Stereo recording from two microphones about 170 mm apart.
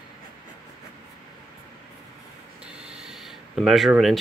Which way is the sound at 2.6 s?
5° right (ahead or behind).